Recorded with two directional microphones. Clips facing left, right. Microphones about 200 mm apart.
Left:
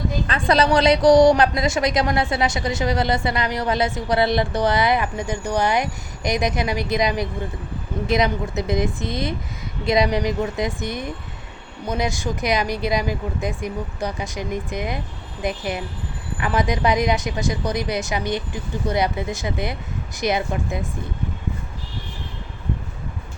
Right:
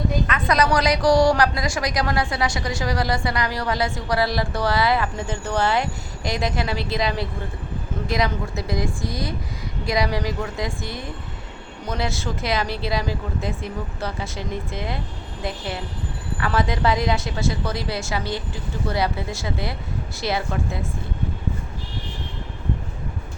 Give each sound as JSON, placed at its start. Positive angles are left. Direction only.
{"t": 0.3, "sound": "a woman's voice", "side_deg": 30}